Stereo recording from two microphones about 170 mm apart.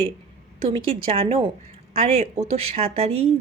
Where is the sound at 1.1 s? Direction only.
35° right (ahead or behind).